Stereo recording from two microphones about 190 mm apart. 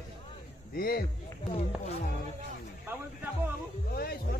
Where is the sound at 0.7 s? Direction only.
50° left (ahead or behind).